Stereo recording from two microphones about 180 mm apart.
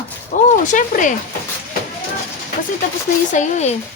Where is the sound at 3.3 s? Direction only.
40° left (ahead or behind).